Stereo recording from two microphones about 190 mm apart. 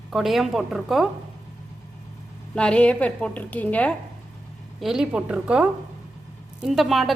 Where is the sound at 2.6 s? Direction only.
5° left (ahead or behind).